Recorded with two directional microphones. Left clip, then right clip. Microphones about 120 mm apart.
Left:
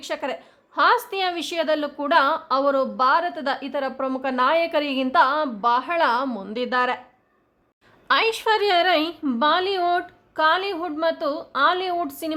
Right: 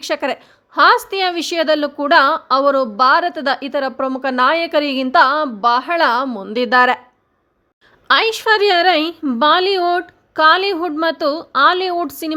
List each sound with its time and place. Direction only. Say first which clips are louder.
0.0 s a woman's voice: right 8 dB; 45° right (ahead or behind)
6.5 s speech: right 11 dB; 50° right (ahead or behind)
8.0 s a woman's voice: right 6 dB; 40° right (ahead or behind)